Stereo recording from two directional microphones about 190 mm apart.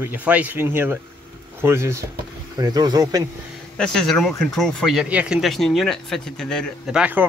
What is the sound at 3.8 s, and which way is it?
Speech, centre (ahead or behind).